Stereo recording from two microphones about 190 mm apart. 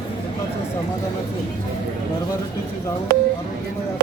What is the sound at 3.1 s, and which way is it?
Speech, 55° right (ahead or behind).